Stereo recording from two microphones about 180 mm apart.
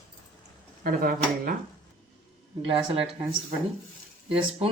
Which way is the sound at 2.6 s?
30° right (ahead or behind).